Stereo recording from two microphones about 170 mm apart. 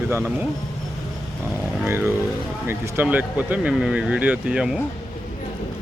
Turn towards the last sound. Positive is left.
turn(degrees=-5)  # may be behind; listen again after turning